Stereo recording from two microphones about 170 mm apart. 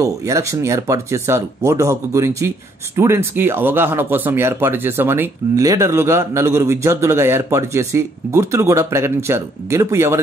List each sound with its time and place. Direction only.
0.0 s speech: 20° right (ahead or behind)